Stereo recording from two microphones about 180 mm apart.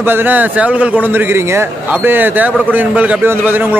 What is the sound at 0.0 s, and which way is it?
A man's voice, 10° right (ahead or behind).